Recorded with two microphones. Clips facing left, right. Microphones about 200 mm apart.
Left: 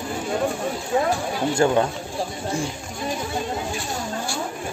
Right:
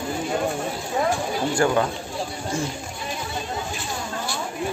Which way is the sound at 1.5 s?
25° left (ahead or behind).